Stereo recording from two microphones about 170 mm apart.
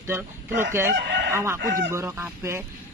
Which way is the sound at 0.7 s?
15° right (ahead or behind).